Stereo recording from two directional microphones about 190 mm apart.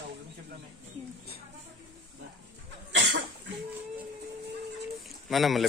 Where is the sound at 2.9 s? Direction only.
70° right (ahead or behind).